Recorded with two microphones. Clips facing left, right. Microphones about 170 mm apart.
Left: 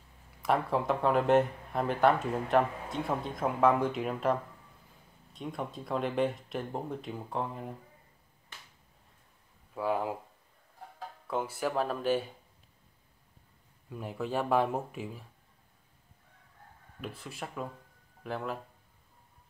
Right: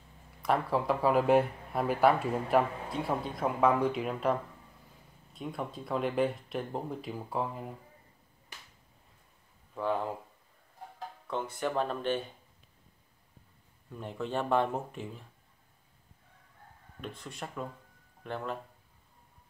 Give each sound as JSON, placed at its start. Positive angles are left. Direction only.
{"t": 0.4, "sound": "speech", "side_deg": 0}
{"t": 9.8, "sound": "speech", "side_deg": 5}
{"t": 11.2, "sound": "speech", "side_deg": 5}
{"t": 13.8, "sound": "speech", "side_deg": 5}
{"t": 17.2, "sound": "speech", "side_deg": 5}